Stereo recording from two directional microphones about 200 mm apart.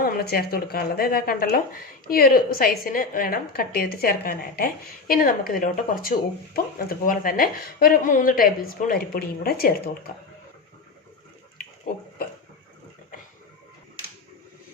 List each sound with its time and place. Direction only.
0.0 s speech: 50° left (ahead or behind)